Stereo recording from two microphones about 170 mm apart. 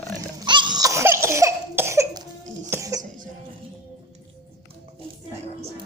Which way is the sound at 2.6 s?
15° right (ahead or behind).